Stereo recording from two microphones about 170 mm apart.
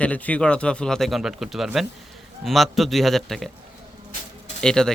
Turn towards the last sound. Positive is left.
turn(degrees=5)  # may be behind; listen again after turning